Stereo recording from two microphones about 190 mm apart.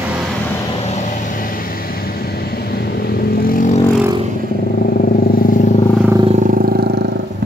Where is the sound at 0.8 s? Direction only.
40° left (ahead or behind).